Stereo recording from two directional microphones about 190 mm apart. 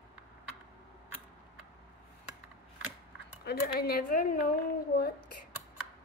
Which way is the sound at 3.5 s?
55° left (ahead or behind).